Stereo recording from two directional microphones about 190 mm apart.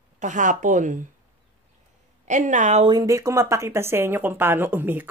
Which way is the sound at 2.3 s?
40° right (ahead or behind).